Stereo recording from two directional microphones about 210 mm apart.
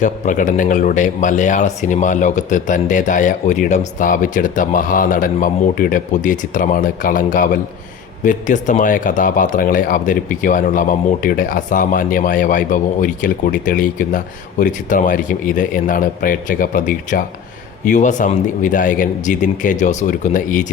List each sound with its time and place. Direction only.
0.0 s a man's voice: 35° left (ahead or behind)